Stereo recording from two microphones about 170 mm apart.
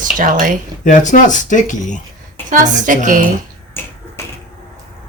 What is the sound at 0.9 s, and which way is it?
Speech, 50° left (ahead or behind).